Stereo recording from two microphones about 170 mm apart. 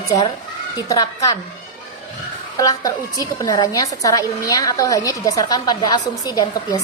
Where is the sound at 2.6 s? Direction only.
20° left (ahead or behind).